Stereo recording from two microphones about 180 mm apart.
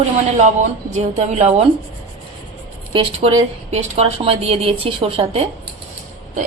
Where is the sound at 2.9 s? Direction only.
30° right (ahead or behind).